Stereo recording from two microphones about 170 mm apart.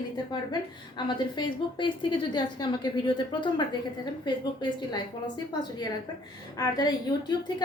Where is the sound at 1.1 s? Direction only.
25° left (ahead or behind).